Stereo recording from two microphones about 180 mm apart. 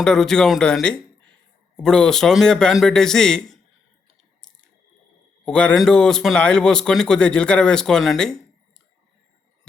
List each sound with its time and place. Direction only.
0.0 s a man's voice: 5° left (ahead or behind)
5.5 s a man's voice: 5° left (ahead or behind)